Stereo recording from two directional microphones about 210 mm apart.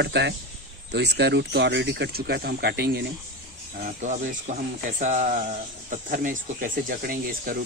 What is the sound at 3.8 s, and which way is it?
Speech, 35° right (ahead or behind).